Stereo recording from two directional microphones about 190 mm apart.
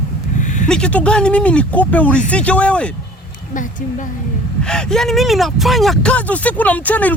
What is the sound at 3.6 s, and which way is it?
Speech, 45° left (ahead or behind).